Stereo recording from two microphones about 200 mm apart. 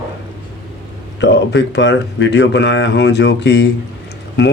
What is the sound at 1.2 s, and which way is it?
Speech, 60° left (ahead or behind).